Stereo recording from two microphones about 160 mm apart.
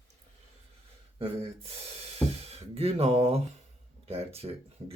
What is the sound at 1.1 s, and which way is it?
Speech, 35° right (ahead or behind).